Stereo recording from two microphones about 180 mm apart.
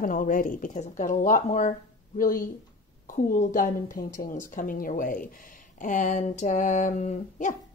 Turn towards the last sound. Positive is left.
turn(degrees=40)  # may be behind; listen again after turning